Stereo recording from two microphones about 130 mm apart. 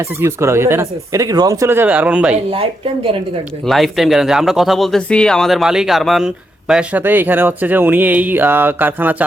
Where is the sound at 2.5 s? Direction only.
45° right (ahead or behind).